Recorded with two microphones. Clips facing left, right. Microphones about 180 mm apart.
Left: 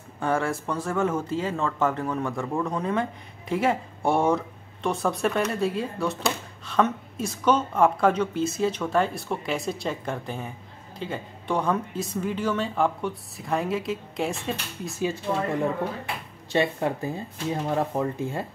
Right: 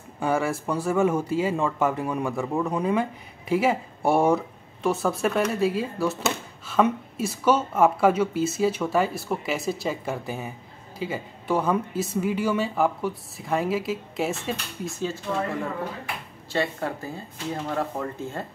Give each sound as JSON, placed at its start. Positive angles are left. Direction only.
{"t": 0.2, "sound": "speech", "side_deg": -5}
{"t": 15.3, "sound": "speech", "side_deg": 20}
{"t": 16.5, "sound": "speech", "side_deg": 20}